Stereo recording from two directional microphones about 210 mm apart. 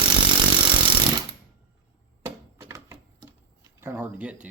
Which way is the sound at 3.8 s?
10° right (ahead or behind).